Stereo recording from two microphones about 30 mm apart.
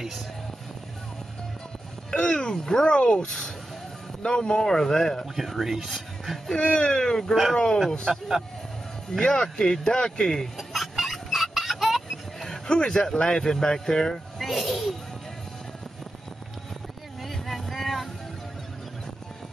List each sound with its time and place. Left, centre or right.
2.1 s speech: left
2.5 s speech: centre
4.6 s speech: centre
5.2 s speech: centre
6.6 s speech: left
7.0 s speech: left
8.1 s speech: centre
9.2 s speech: left
10.7 s vehicle: centre
12.6 s speech: left
14.4 s a child's voice: centre
17.2 s vehicle: centre